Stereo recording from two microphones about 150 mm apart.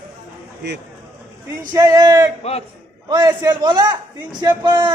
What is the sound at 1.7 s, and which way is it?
Speech, 25° right (ahead or behind).